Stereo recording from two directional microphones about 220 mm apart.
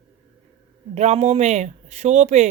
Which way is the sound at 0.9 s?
30° right (ahead or behind).